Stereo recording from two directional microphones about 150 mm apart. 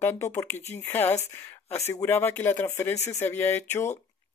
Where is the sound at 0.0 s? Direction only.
20° left (ahead or behind).